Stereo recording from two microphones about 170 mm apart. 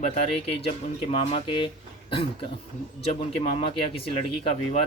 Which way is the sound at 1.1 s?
35° left (ahead or behind).